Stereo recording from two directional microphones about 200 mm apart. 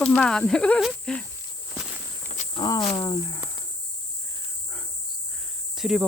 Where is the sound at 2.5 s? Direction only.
20° left (ahead or behind).